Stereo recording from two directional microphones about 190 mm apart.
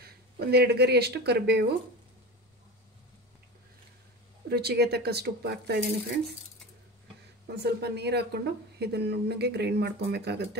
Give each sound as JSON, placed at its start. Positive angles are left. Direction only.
{"t": 0.0, "sound": "speech", "side_deg": -60}
{"t": 4.5, "sound": "speech", "side_deg": -55}
{"t": 7.5, "sound": "speech", "side_deg": -60}